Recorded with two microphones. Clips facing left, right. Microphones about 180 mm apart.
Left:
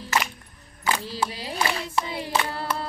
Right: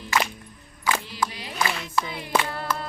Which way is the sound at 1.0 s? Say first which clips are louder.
Left 1 dB; 30° left (ahead or behind).